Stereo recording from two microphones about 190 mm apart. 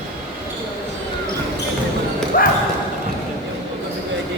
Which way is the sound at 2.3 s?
45° left (ahead or behind).